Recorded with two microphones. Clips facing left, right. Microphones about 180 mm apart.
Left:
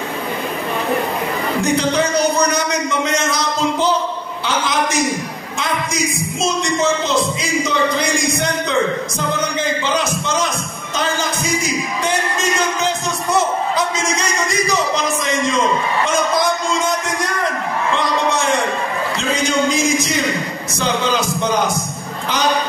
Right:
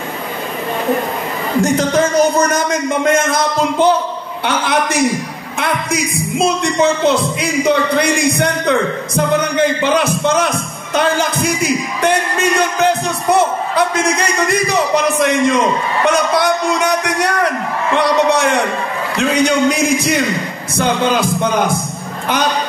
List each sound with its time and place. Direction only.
1.6 s a man's voice: 45° right (ahead or behind)